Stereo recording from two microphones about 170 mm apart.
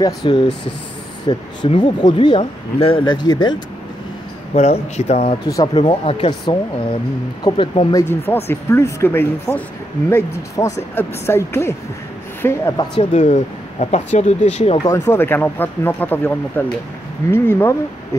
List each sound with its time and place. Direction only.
0.0 s speech: 25° left (ahead or behind)
4.6 s speech: 40° left (ahead or behind)
8.5 s speech: 15° left (ahead or behind)
13.1 s speech: 40° left (ahead or behind)
14.8 s speech: 15° left (ahead or behind)